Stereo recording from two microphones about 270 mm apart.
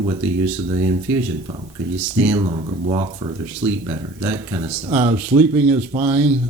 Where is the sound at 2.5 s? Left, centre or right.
Centre.